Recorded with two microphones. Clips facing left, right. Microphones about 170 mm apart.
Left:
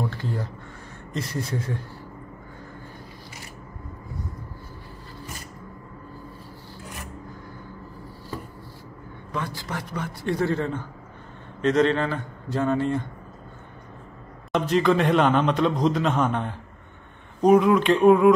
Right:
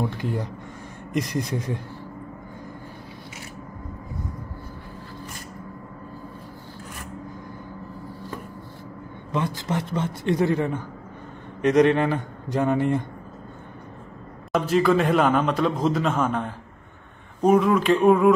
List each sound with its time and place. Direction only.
0.1 s a man's voice: 15° right (ahead or behind)
9.3 s a man's voice: 20° right (ahead or behind)
14.5 s a man's voice: 5° right (ahead or behind)